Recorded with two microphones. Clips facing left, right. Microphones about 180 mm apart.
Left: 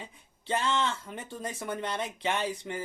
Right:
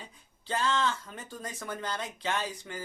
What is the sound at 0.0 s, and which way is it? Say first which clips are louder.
Speech: left 4 dB; 25° left (ahead or behind).